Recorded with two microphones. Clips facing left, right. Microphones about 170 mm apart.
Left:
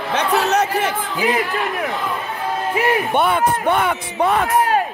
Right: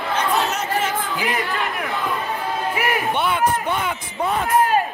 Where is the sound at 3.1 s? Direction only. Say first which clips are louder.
Left 3 dB; 50° left (ahead or behind); by 4.5 s 70° left (ahead or behind).